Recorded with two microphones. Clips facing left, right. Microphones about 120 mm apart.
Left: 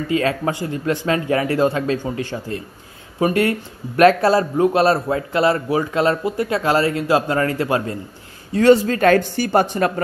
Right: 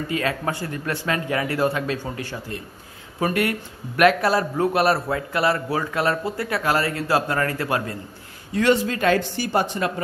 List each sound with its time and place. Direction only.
0.1 s a man's voice: 30° left (ahead or behind)
8.5 s speech: 40° left (ahead or behind)